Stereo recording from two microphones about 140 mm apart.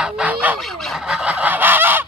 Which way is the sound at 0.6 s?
Centre (ahead or behind).